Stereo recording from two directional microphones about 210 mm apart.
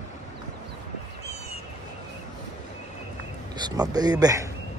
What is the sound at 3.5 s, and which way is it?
Speech, 20° right (ahead or behind).